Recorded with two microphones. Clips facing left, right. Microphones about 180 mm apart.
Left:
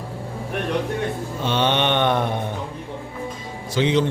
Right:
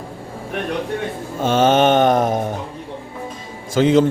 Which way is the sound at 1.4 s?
45° right (ahead or behind).